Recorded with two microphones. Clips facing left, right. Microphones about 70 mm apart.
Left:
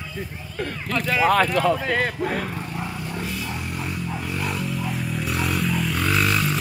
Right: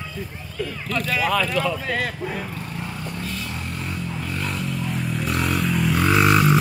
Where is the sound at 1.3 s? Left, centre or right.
Left.